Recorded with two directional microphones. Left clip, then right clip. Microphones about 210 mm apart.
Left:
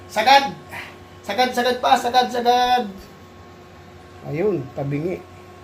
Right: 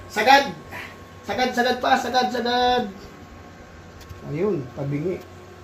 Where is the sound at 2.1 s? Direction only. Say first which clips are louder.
Left 4 dB; 40° left (ahead or behind).